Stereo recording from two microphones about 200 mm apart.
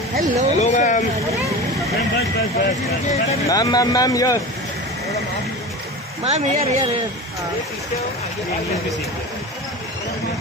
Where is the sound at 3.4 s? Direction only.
20° left (ahead or behind).